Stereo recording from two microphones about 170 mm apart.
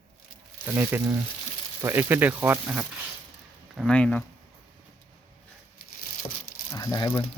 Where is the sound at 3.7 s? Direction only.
5° left (ahead or behind).